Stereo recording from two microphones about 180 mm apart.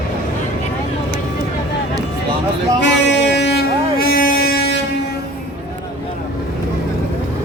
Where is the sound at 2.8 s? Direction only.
75° left (ahead or behind).